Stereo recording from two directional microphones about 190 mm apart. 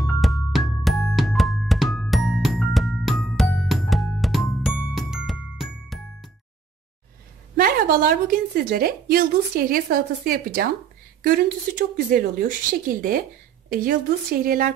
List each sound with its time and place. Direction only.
0.0 s music: centre (ahead or behind)
7.5 s a woman's voice: 50° right (ahead or behind)
14.4 s a woman's voice: 50° right (ahead or behind)